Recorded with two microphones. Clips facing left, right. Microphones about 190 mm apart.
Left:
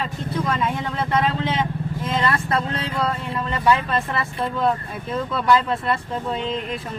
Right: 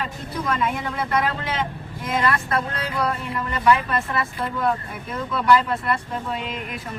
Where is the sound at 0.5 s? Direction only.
25° left (ahead or behind).